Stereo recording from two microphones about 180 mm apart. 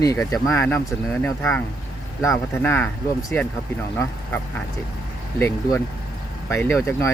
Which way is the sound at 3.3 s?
10° left (ahead or behind).